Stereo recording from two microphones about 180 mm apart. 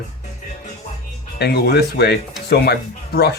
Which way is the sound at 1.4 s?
65° left (ahead or behind).